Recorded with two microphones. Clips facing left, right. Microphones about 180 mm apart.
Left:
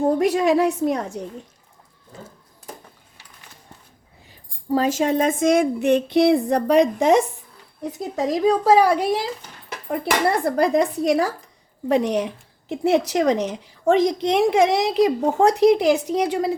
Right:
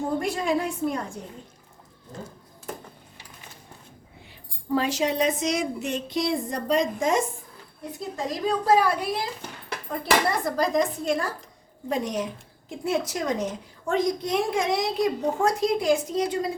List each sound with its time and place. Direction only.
0.2 s a woman's voice: 80° left
4.7 s speech: 45° left (ahead or behind); by 7.3 s 65° left (ahead or behind)
8.1 s a woman's voice: 80° left
10.4 s a woman's voice: 65° left (ahead or behind); by 11.3 s 80° left
11.9 s a woman's voice: 70° left (ahead or behind)